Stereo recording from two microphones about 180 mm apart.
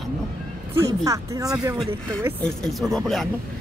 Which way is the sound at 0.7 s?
15° right (ahead or behind).